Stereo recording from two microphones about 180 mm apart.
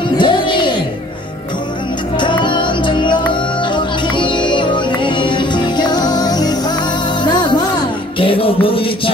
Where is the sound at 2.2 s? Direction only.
25° left (ahead or behind).